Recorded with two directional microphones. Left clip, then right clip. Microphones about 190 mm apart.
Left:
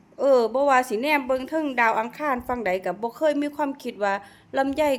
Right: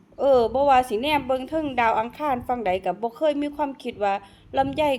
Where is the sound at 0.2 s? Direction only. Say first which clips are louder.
Right 1 dB; 15° left (ahead or behind).